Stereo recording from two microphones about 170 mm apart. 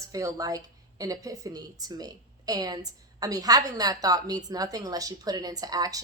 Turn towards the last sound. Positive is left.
turn(degrees=-20)  # may be behind; listen again after turning